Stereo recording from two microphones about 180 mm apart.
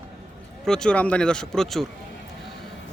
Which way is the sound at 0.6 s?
5° left (ahead or behind).